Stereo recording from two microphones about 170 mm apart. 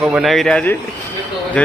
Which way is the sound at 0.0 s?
5° right (ahead or behind).